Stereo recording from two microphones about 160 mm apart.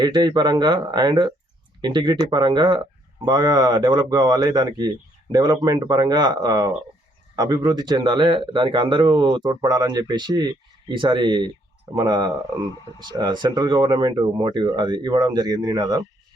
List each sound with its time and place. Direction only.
0.0 s speech: 25° right (ahead or behind)